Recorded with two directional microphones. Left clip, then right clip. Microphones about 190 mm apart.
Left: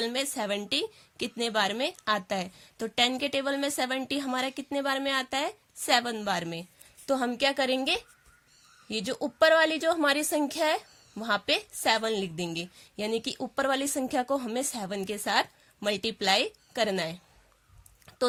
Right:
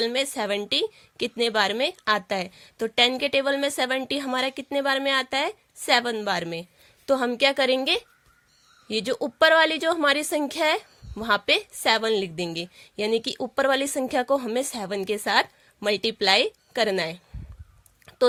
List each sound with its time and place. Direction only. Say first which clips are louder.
0.0 s a woman's voice: right 5 dB; 30° right (ahead or behind)